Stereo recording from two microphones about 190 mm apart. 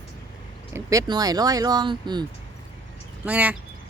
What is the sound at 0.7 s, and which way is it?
Speech, 20° right (ahead or behind).